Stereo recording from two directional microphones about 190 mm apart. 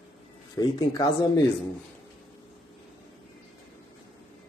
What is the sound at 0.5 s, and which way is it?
Speech, 20° left (ahead or behind).